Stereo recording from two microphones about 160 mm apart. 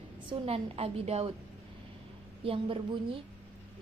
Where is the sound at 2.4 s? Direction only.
35° right (ahead or behind).